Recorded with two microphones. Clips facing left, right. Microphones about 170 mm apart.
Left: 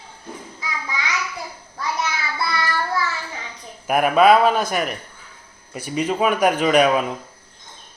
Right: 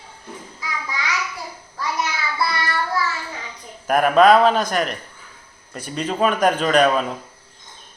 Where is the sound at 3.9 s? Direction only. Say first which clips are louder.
Right 1 dB; 10° left (ahead or behind).